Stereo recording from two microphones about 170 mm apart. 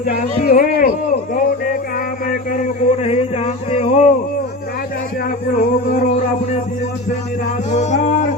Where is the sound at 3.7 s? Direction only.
40° left (ahead or behind).